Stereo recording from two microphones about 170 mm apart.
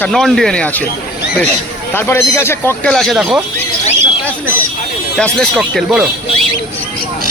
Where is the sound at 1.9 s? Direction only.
15° left (ahead or behind).